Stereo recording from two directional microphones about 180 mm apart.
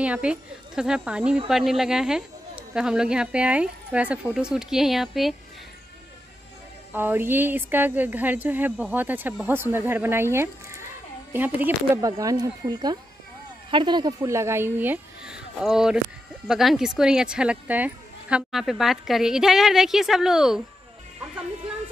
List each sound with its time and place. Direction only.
0.0 s speech: 5° right (ahead or behind)
6.9 s speech: 10° right (ahead or behind)